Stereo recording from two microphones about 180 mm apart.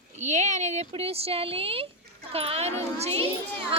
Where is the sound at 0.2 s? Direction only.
40° right (ahead or behind).